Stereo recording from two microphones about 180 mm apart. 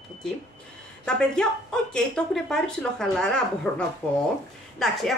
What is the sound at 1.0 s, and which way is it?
A woman's voice, 5° left (ahead or behind).